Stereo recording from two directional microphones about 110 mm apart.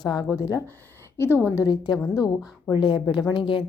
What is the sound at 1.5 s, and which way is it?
A woman's voice, 35° left (ahead or behind).